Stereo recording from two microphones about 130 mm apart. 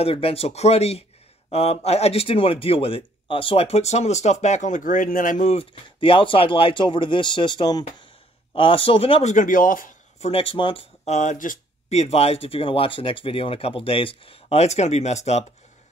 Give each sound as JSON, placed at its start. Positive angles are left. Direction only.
{"t": 0.0, "sound": "speech", "side_deg": 45}
{"t": 5.5, "sound": "speech", "side_deg": 45}
{"t": 9.3, "sound": "speech", "side_deg": 85}
{"t": 10.2, "sound": "speech", "side_deg": 45}
{"t": 11.1, "sound": "speech", "side_deg": 65}
{"t": 12.0, "sound": "speech", "side_deg": 50}